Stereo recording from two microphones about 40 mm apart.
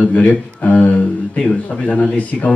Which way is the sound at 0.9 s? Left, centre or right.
Left.